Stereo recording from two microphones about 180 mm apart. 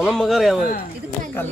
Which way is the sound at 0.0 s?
Centre (ahead or behind).